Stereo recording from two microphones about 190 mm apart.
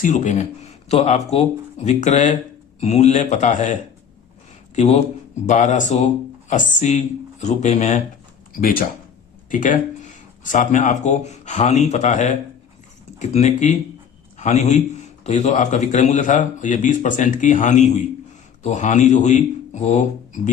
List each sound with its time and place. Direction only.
0.0 s a man's voice: 40° left (ahead or behind)